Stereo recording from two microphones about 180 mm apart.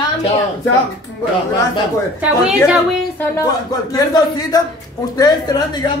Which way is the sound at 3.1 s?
15° left (ahead or behind).